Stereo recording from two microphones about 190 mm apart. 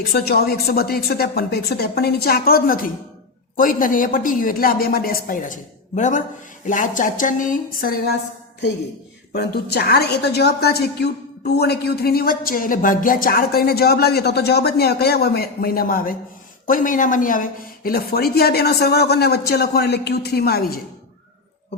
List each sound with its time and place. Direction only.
0.0 s a woman's voice: 55° left (ahead or behind)
9.3 s a woman's voice: 55° left (ahead or behind)